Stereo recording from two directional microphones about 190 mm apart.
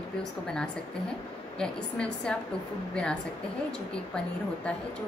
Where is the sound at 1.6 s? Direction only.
5° left (ahead or behind).